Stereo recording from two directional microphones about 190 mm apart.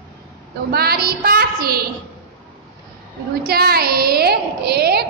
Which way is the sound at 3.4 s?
55° right (ahead or behind).